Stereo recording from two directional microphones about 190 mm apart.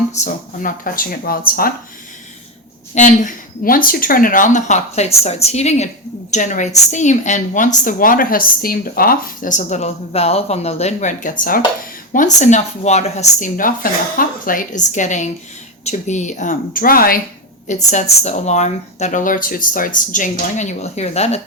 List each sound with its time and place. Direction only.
0.2 s a woman's voice: 35° left (ahead or behind)
0.6 s speech: 50° left (ahead or behind)
2.9 s a woman's voice: 40° left (ahead or behind)
17.9 s a woman's voice: 35° left (ahead or behind)